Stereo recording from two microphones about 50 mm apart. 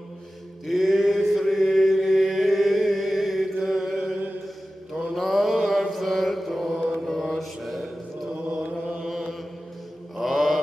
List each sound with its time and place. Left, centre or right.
0.7 s chant: centre
4.9 s mantra: centre
8.5 s chant: right
9.0 s mantra: centre